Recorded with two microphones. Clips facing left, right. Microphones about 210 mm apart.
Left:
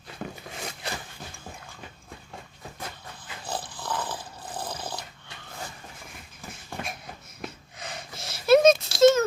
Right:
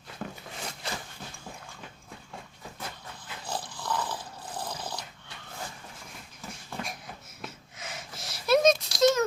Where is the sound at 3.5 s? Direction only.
55° left (ahead or behind).